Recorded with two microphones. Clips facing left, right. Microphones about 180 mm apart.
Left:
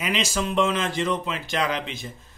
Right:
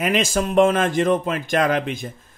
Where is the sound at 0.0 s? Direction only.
50° right (ahead or behind).